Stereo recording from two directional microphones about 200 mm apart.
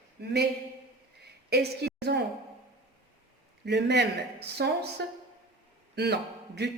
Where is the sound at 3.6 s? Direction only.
60° right (ahead or behind).